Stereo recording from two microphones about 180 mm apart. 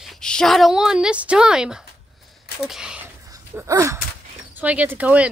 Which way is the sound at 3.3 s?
15° right (ahead or behind).